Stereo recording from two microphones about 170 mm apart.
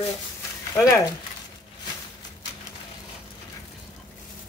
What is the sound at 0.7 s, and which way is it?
Stir, 15° left (ahead or behind).